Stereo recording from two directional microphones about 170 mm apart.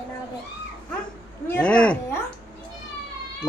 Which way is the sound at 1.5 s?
10° left (ahead or behind).